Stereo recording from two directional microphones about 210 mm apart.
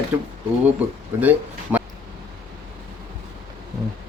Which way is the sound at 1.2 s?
10° right (ahead or behind).